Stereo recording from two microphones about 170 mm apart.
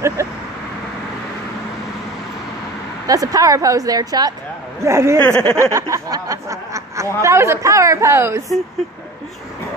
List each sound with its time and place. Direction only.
0.2 s vehicle: 15° right (ahead or behind)
3.1 s a woman's voice: 20° right (ahead or behind)
5.2 s speech: 5° left (ahead or behind)
5.6 s speech: 15° right (ahead or behind)